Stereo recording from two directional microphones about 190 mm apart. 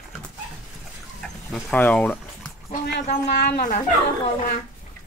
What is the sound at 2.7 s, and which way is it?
Speech, 55° left (ahead or behind).